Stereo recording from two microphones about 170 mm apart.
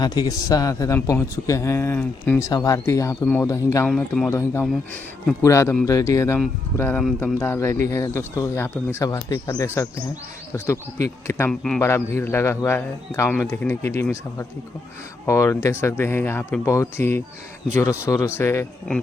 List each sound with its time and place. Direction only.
0.0 s a man's voice: 25° left (ahead or behind)
3.8 s speech: 5° left (ahead or behind)
4.3 s a man's voice: 15° left (ahead or behind)